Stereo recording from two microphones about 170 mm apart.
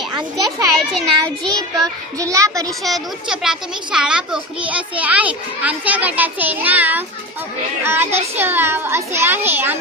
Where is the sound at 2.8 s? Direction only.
Centre (ahead or behind).